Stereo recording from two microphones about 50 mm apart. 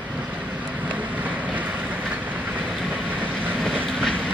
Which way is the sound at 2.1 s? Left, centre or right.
Right.